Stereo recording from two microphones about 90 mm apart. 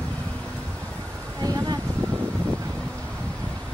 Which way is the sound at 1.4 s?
45° right (ahead or behind).